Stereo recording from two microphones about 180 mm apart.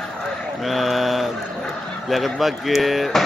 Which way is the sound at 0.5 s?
Centre (ahead or behind).